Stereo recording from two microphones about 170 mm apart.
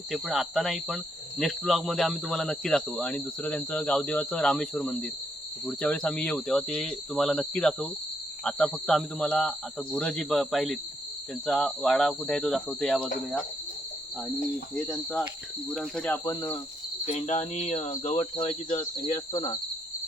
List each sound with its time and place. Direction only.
0.1 s speech: centre (ahead or behind)
15.7 s speech: 5° left (ahead or behind); by 16.6 s 20° left (ahead or behind)
17.1 s speech: 40° left (ahead or behind)
19.1 s cricket: 20° left (ahead or behind)